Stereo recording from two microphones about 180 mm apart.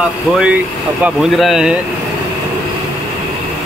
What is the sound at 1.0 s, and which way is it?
Speech, centre (ahead or behind).